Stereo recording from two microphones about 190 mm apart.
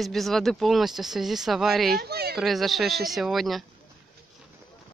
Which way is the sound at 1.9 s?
55° right (ahead or behind).